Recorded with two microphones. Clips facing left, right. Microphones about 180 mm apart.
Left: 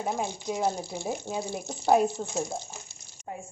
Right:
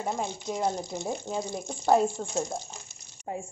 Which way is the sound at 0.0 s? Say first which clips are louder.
Left 1 dB; 5° left (ahead or behind).